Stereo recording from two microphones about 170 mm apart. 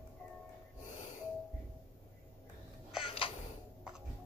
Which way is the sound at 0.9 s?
45° left (ahead or behind).